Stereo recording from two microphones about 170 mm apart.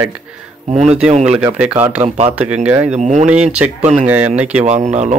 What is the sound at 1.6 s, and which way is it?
A man's voice, 10° right (ahead or behind).